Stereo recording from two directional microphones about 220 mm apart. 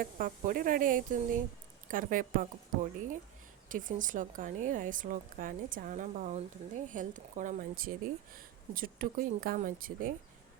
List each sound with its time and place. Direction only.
0.0 s speech: 40° right (ahead or behind)